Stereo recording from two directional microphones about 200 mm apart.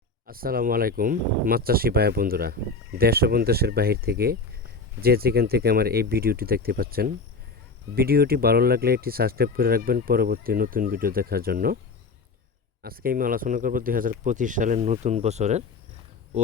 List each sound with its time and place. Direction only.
0.3 s speech: 45° right (ahead or behind)
12.8 s speech: 45° right (ahead or behind)